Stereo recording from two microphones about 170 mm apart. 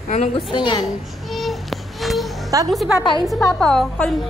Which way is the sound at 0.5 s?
25° left (ahead or behind).